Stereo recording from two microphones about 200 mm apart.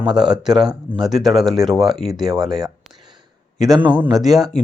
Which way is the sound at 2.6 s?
20° right (ahead or behind).